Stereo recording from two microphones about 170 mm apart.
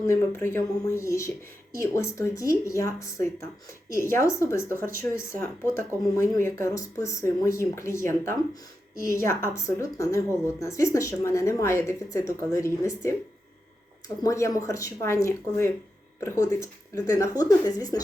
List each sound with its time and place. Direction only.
0.0 s a woman's voice: 15° left (ahead or behind)
6.1 s a woman's voice: 15° left (ahead or behind)
14.2 s a woman's voice: 20° left (ahead or behind)